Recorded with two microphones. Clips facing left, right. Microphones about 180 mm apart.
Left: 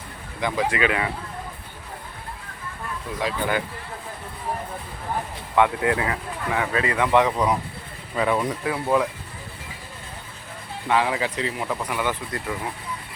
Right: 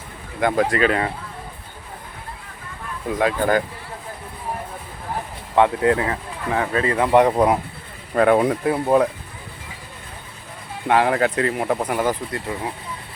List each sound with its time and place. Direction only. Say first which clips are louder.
0.3 s speech: right 6 dB; 50° right (ahead or behind)
0.7 s speech: right 4 dB; 40° right (ahead or behind)
3.2 s speech: right 6 dB; 50° right (ahead or behind)
5.5 s speech: right 4 dB; 30° right (ahead or behind); by 8.5 s 60° right (ahead or behind)
8.6 s speech: right 5 dB; 40° right (ahead or behind)
10.8 s speech: right 5 dB; 55° right (ahead or behind)
12.5 s speech: even; 30° right (ahead or behind)